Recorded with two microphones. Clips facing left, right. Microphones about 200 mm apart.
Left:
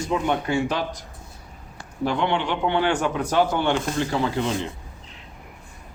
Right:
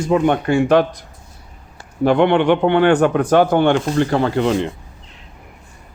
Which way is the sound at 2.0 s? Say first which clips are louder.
Right 10 dB; 60° right (ahead or behind).